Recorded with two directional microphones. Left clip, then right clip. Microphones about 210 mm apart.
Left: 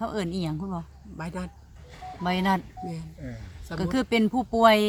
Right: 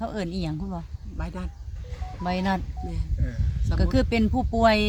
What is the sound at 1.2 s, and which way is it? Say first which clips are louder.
Speech: left 2 dB; 45° left (ahead or behind).